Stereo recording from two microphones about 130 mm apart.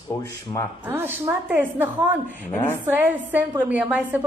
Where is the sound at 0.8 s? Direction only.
15° right (ahead or behind).